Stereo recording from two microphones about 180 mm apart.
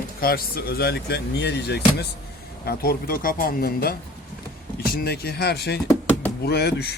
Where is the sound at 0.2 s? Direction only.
55° left (ahead or behind).